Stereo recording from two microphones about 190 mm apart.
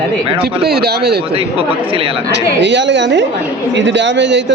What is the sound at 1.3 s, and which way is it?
Speech, 30° right (ahead or behind).